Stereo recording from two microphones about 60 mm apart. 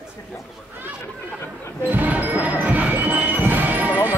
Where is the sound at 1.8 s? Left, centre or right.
Right.